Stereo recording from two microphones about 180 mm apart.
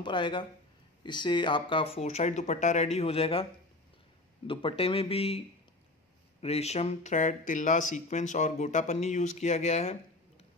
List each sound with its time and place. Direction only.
0.0 s speech: 25° left (ahead or behind)
4.5 s speech: 30° left (ahead or behind)
6.4 s speech: 35° left (ahead or behind)